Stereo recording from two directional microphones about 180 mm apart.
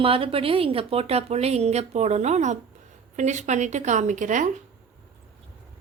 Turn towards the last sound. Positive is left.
turn(degrees=-45)  # may be behind; listen again after turning